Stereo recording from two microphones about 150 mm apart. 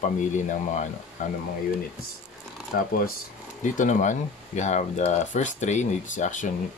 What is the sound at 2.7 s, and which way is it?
Speech, 85° left.